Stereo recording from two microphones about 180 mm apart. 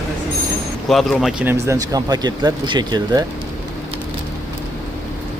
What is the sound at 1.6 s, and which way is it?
Speech, 20° right (ahead or behind).